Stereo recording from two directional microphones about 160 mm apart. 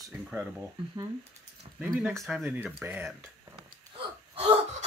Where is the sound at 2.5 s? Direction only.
10° right (ahead or behind).